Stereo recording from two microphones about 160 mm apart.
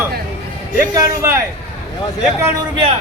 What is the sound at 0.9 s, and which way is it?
Speech, 20° right (ahead or behind).